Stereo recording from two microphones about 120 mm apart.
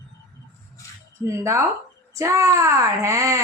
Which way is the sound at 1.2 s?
25° right (ahead or behind).